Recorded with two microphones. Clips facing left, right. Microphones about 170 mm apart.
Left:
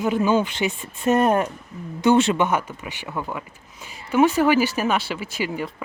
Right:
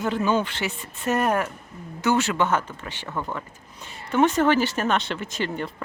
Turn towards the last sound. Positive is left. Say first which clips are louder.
# left 1 dB
turn(degrees=5)  # may be behind; listen again after turning